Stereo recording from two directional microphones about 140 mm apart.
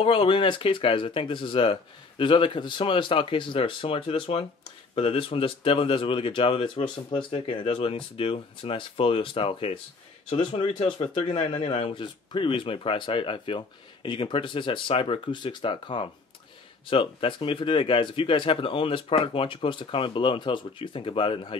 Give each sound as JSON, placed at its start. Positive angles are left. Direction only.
{"t": 0.0, "sound": "speech", "side_deg": 40}